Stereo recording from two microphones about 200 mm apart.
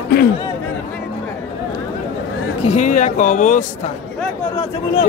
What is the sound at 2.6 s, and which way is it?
Speech, 35° left (ahead or behind).